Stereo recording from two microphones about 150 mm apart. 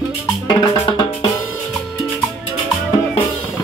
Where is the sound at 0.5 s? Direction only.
35° left (ahead or behind).